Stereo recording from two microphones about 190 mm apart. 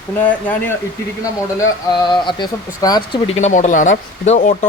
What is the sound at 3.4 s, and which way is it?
Speech, 40° left (ahead or behind).